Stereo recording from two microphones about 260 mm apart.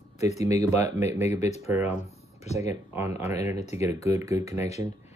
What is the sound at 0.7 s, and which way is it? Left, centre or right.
Speech, centre.